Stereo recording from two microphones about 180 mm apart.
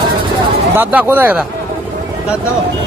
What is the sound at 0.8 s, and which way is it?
Speech, 10° right (ahead or behind).